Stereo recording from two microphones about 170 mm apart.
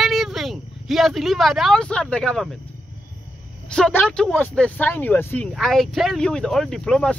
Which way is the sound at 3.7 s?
5° left (ahead or behind).